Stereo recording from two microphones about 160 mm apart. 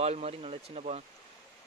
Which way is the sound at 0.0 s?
40° right (ahead or behind).